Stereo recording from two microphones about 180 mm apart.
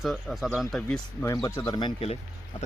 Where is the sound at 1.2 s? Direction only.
15° left (ahead or behind).